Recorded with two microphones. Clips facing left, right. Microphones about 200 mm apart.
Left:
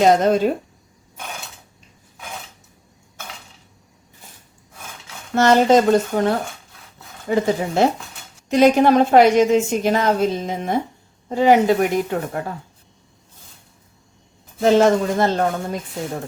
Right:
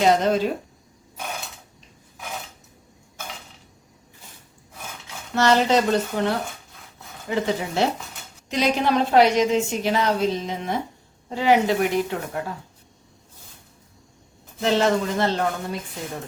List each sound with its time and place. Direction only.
0.0 s a woman's voice: 50° left (ahead or behind)
5.3 s a woman's voice: 50° left (ahead or behind)
14.6 s a woman's voice: 45° left (ahead or behind)